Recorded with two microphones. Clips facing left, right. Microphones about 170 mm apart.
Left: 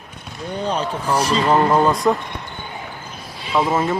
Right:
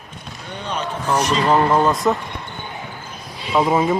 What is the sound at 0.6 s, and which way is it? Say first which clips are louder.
Speech: left 4 dB; 35° left (ahead or behind).